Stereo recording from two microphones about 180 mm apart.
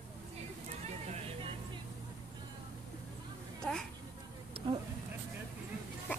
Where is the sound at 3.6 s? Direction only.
5° left (ahead or behind).